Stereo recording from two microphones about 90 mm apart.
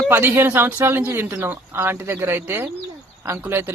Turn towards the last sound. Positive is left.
turn(degrees=-25)  # may be behind; listen again after turning